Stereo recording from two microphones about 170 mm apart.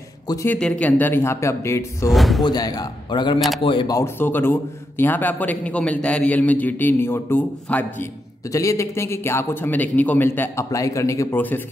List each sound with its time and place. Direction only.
0.3 s a man's voice: 20° left (ahead or behind)
0.6 s a man's voice: 5° left (ahead or behind)
2.0 s speech: centre (ahead or behind)
2.4 s speech: 25° left (ahead or behind)
3.3 s speech: centre (ahead or behind)
3.6 s a man's voice: 25° left (ahead or behind); by 11.6 s 10° left (ahead or behind)